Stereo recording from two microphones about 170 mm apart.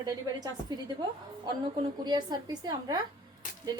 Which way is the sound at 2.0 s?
25° right (ahead or behind).